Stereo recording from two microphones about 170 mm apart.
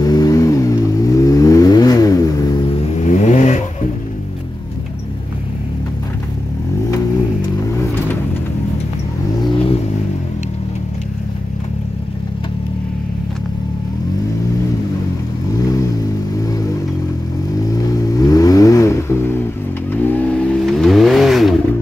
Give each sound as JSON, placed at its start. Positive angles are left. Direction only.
{"t": 0.0, "sound": "vehicle", "side_deg": 20}
{"t": 3.0, "sound": "vehicle", "side_deg": 45}
{"t": 7.6, "sound": "vehicle", "side_deg": 10}
{"t": 17.9, "sound": "vehicle", "side_deg": 20}